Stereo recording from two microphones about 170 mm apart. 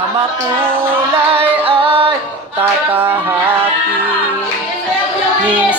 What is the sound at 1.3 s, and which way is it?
Music, 35° right (ahead or behind).